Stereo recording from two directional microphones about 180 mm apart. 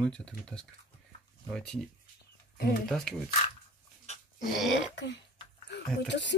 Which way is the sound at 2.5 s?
60° left (ahead or behind).